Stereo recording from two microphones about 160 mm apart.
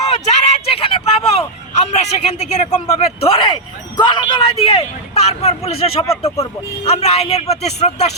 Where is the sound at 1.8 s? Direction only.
45° left (ahead or behind).